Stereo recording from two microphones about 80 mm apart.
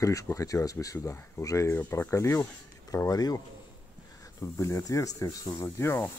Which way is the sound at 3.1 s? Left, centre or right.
Left.